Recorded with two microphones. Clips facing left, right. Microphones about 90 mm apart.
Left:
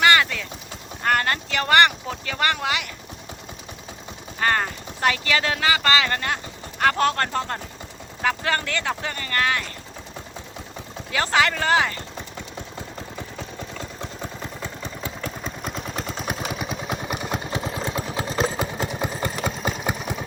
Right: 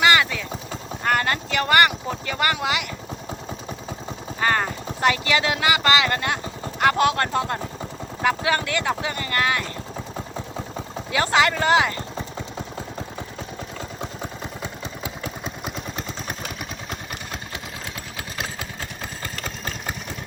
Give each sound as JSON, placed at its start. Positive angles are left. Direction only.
{"t": 0.0, "sound": "clip-clop", "side_deg": -5}
{"t": 1.0, "sound": "vehicle", "side_deg": 0}
{"t": 4.4, "sound": "speech", "side_deg": -10}
{"t": 11.1, "sound": "speech", "side_deg": -10}
{"t": 14.6, "sound": "vehicle", "side_deg": -10}
{"t": 17.3, "sound": "vehicle", "side_deg": 25}